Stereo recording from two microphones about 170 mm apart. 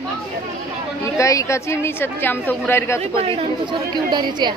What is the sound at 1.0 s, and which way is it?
A woman's voice, 20° left (ahead or behind).